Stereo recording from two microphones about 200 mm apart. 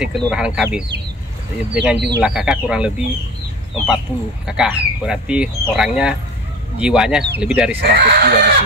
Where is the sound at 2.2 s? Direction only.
5° right (ahead or behind).